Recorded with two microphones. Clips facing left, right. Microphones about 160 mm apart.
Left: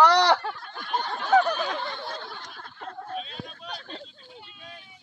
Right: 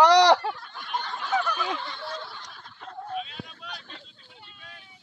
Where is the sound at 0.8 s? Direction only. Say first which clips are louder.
Left 5 dB; 40° left (ahead or behind).